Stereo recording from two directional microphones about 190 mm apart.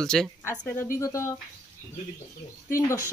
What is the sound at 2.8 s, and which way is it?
Speech, 15° left (ahead or behind).